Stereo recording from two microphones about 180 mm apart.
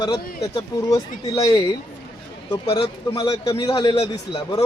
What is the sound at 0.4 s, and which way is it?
A man's voice, 20° left (ahead or behind).